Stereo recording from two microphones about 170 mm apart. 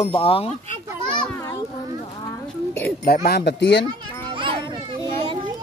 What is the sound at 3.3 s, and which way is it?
Speech, 80° left.